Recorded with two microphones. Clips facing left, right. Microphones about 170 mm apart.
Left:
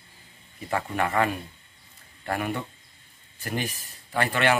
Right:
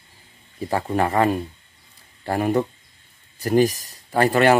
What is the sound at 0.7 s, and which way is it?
Speech, 35° right (ahead or behind).